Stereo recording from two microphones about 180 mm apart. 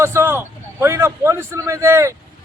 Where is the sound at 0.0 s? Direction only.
15° right (ahead or behind).